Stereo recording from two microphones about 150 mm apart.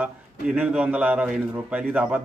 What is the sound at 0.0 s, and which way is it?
A man's voice, 10° right (ahead or behind).